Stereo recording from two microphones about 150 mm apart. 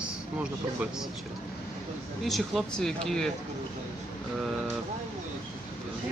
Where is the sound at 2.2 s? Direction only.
Centre (ahead or behind).